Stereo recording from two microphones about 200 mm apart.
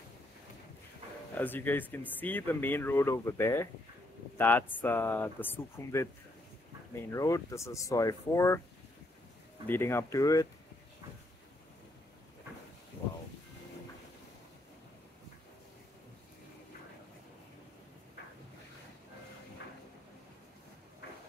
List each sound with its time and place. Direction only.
1.3 s speech: 10° left (ahead or behind)
7.1 s speech: 15° left (ahead or behind)
9.7 s speech: 10° left (ahead or behind)